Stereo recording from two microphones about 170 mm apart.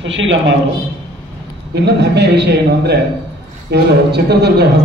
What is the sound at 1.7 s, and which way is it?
A man's voice, 75° right (ahead or behind).